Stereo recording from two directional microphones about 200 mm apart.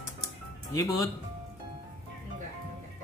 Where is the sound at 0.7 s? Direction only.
15° left (ahead or behind).